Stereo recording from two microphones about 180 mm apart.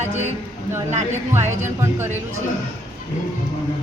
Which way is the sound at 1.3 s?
15° right (ahead or behind).